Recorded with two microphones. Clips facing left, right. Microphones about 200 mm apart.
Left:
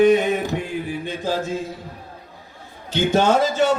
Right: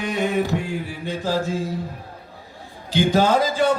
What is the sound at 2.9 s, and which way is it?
Speech, 25° left (ahead or behind).